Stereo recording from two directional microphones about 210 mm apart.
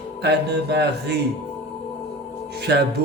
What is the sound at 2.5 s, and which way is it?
Speech, 50° right (ahead or behind).